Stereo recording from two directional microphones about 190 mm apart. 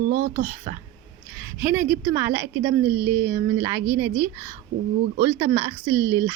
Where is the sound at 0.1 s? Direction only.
45° right (ahead or behind).